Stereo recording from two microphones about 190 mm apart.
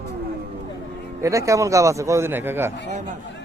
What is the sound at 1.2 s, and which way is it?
A man's voice, 15° right (ahead or behind).